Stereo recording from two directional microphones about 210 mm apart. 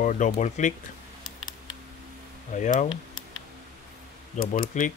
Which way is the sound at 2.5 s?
35° left (ahead or behind).